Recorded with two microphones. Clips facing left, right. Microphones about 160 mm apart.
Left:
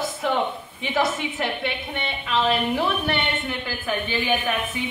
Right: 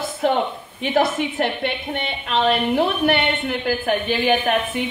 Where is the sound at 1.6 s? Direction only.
60° right (ahead or behind).